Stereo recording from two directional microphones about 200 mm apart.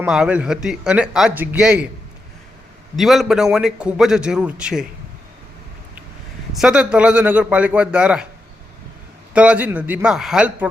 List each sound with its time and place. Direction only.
0.0 s a man's voice: 5° right (ahead or behind)
2.9 s a man's voice: centre (ahead or behind)
6.5 s a man's voice: 5° right (ahead or behind)
9.3 s a man's voice: 5° right (ahead or behind)